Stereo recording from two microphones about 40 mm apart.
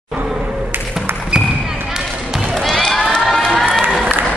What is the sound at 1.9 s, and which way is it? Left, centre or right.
Basketball bounce, centre.